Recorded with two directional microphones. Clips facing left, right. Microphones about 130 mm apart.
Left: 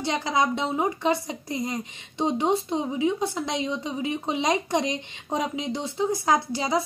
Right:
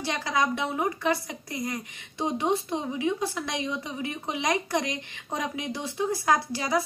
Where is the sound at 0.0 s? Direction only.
20° left (ahead or behind).